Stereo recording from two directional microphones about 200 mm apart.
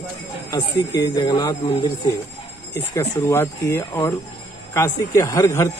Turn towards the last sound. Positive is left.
turn(degrees=15)  # may be behind; listen again after turning